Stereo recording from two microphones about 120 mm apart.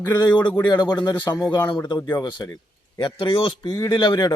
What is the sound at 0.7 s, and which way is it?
Speech, 35° left (ahead or behind).